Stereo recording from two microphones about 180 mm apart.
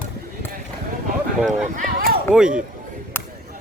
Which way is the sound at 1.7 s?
50° right (ahead or behind).